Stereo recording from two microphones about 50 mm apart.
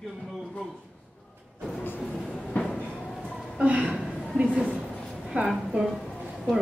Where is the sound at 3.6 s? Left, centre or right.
Right.